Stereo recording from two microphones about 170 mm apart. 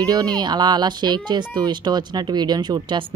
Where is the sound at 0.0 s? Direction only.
20° right (ahead or behind).